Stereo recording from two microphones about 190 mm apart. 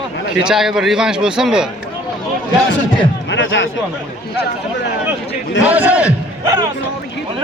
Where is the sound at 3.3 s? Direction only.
75° left (ahead or behind).